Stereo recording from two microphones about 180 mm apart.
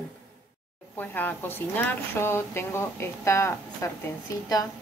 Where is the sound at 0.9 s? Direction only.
10° left (ahead or behind).